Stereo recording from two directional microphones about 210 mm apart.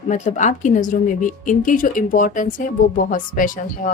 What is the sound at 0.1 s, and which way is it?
A woman's voice, 35° left (ahead or behind).